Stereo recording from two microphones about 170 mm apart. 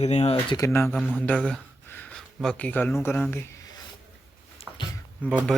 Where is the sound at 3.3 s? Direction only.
15° left (ahead or behind).